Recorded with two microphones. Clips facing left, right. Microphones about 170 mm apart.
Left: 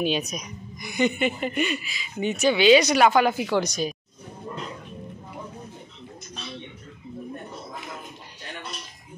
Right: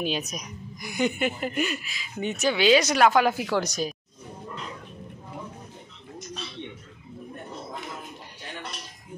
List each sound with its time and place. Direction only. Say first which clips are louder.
0.0 s speech: left 4 dB; centre (ahead or behind)